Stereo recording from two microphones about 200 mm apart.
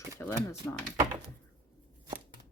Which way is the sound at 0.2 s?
10° left (ahead or behind).